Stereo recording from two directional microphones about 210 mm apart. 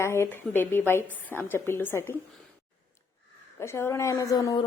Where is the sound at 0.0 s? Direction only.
10° left (ahead or behind).